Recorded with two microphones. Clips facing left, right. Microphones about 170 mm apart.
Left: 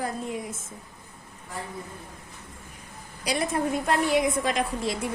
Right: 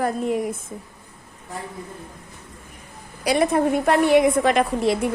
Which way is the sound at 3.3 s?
65° right (ahead or behind).